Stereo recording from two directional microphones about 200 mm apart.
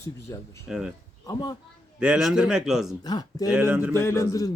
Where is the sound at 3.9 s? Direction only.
15° left (ahead or behind).